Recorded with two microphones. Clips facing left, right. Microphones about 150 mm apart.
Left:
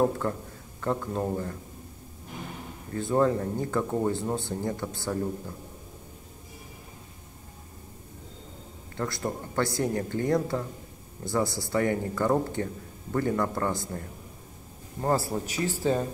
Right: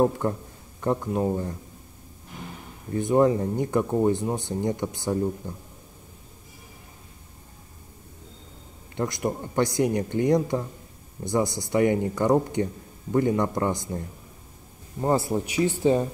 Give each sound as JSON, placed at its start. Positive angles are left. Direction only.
{"t": 0.2, "sound": "speech", "side_deg": -20}
{"t": 2.9, "sound": "speech", "side_deg": -20}
{"t": 8.9, "sound": "speech", "side_deg": -20}